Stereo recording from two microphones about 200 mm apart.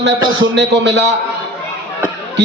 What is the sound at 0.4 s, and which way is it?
Speech, 60° right (ahead or behind).